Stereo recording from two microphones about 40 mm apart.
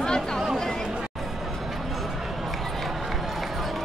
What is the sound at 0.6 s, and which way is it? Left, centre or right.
Chatter, centre.